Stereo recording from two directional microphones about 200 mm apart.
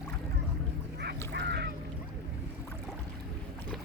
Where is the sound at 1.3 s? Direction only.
55° right (ahead or behind).